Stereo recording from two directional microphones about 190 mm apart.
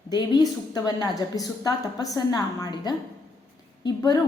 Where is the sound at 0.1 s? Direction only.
20° left (ahead or behind).